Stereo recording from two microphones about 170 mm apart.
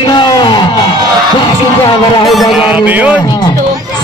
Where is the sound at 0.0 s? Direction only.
25° left (ahead or behind).